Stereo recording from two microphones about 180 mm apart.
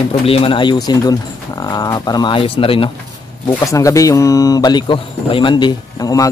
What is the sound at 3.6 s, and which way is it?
Speech, 15° left (ahead or behind).